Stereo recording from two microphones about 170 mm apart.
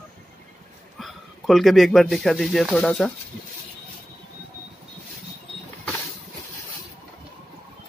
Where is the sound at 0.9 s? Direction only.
Centre (ahead or behind).